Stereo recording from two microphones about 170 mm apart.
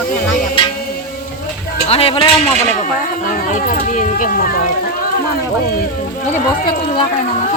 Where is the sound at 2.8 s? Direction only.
50° left (ahead or behind).